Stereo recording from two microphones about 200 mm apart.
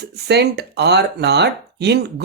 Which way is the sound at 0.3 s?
55° right (ahead or behind).